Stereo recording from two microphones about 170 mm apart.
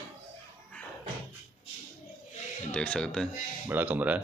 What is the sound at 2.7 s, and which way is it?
Speech, 5° left (ahead or behind).